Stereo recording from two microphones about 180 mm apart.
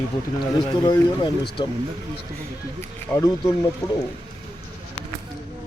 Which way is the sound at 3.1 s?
20° left (ahead or behind).